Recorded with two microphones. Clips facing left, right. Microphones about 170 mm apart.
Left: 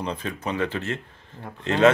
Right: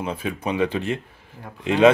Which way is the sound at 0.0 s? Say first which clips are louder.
Right 3 dB; 10° right (ahead or behind).